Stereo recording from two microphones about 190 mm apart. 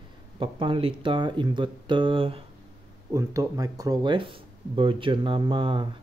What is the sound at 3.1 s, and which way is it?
Speech, 15° right (ahead or behind).